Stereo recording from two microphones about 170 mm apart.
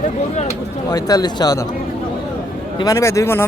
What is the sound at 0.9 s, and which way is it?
Speech, 20° left (ahead or behind).